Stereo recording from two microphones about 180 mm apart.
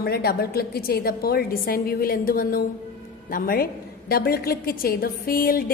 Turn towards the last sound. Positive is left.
turn(degrees=55)  # may be behind; listen again after turning